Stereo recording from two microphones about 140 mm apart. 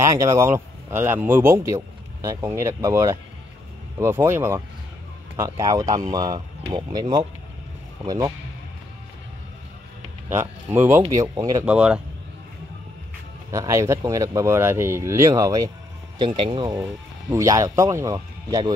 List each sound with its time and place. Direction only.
0.0 s speech: 20° right (ahead or behind)
10.3 s speech: 15° right (ahead or behind)
11.6 s speech: 5° right (ahead or behind)
13.5 s speech: 20° right (ahead or behind)
16.2 s speech: 35° right (ahead or behind)
16.8 s speech: 20° right (ahead or behind)